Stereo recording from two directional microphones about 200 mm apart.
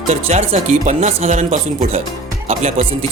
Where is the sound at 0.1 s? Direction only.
35° right (ahead or behind).